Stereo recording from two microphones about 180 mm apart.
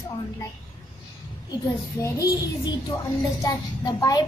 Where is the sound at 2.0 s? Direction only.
20° left (ahead or behind).